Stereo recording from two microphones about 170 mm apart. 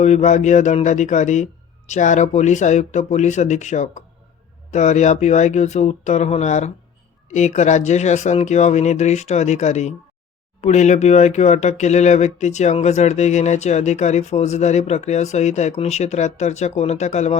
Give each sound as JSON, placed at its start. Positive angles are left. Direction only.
{"t": 0.0, "sound": "speech", "side_deg": 45}